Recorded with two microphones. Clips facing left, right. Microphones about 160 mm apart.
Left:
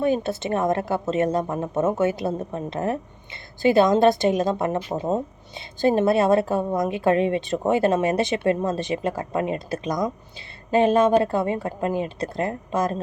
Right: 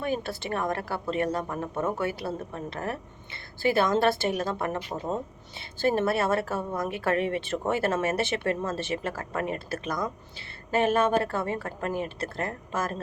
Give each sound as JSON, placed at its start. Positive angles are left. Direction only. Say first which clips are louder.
{"t": 0.0, "sound": "a woman's voice", "louder": "left 8 dB", "side_deg": 20}